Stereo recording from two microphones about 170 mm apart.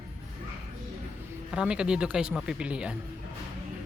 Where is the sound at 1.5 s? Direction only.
5° right (ahead or behind).